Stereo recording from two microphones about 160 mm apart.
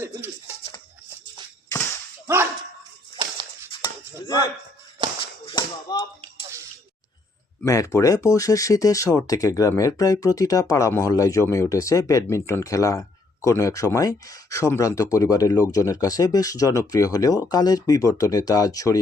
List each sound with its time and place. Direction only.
0.0 s speech: 15° right (ahead or behind)
2.2 s dog: 15° right (ahead or behind)
3.7 s chopping: 25° left (ahead or behind)
5.0 s shuffle: 30° right (ahead or behind)
5.5 s tap: 25° left (ahead or behind)
7.6 s speech: 20° left (ahead or behind)